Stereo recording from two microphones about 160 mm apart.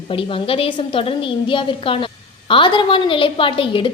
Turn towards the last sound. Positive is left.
turn(degrees=35)  # may be behind; listen again after turning